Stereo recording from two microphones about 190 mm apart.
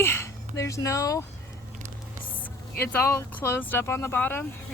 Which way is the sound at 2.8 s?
10° left (ahead or behind).